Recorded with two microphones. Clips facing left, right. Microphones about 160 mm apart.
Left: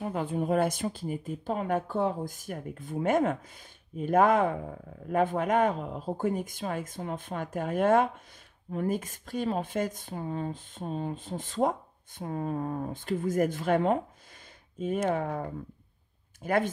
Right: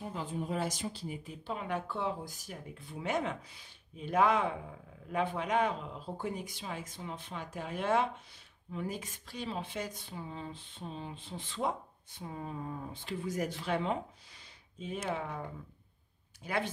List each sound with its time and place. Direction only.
0.0 s speech: 60° left (ahead or behind)
16.4 s speech: 50° left (ahead or behind)